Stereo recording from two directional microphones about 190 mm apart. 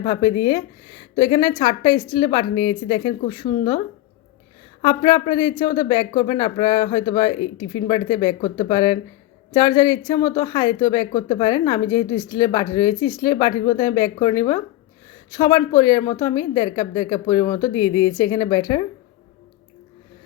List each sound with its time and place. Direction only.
0.0 s a woman's voice: 20° left (ahead or behind)
4.8 s a woman's voice: 25° left (ahead or behind)